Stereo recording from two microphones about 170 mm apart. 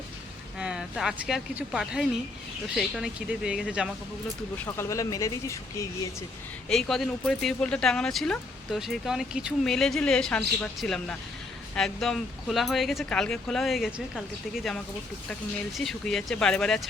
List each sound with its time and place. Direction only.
0.6 s speech: 5° right (ahead or behind)
4.5 s speech: 15° left (ahead or behind)
6.7 s speech: 5° left (ahead or behind)
15.8 s speech: centre (ahead or behind)